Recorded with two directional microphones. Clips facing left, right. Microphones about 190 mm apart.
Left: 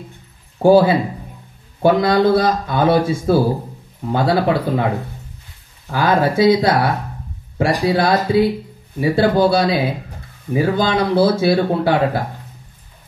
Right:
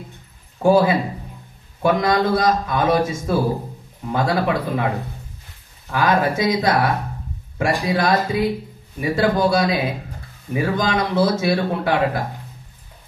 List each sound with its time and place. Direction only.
0.6 s speech: 30° left (ahead or behind)
5.9 s speech: 30° left (ahead or behind)